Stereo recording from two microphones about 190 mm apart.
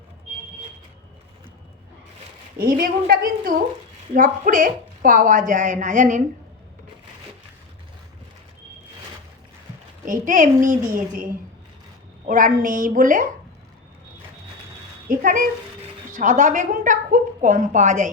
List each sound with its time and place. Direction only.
2.6 s a woman's voice: 50° right (ahead or behind)
10.1 s a woman's voice: 45° right (ahead or behind)
12.3 s a woman's voice: 45° right (ahead or behind)
15.0 s a woman's voice: 45° right (ahead or behind)